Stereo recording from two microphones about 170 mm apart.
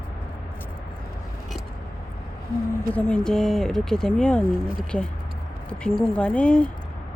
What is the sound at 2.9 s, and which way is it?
A woman's voice, 10° left (ahead or behind).